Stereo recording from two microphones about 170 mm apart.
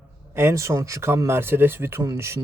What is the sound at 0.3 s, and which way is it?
A man's voice, 15° right (ahead or behind).